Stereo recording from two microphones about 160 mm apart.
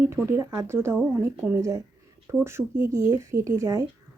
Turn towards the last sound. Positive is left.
turn(degrees=-20)  # may be behind; listen again after turning